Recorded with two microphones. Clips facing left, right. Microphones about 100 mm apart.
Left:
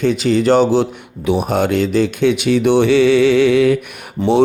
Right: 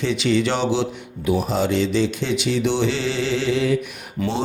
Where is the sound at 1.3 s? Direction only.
65° left (ahead or behind).